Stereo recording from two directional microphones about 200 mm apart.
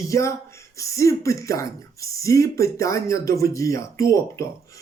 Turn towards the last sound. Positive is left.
turn(degrees=15)  # may be behind; listen again after turning